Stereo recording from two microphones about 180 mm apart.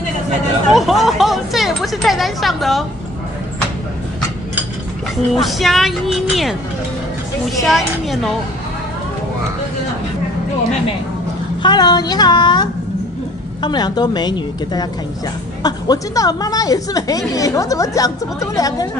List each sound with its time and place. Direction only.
0.7 s a sound: centre (ahead or behind)
5.3 s speech: centre (ahead or behind)
7.6 s speech: centre (ahead or behind)
11.6 s a woman's voice: 25° left (ahead or behind)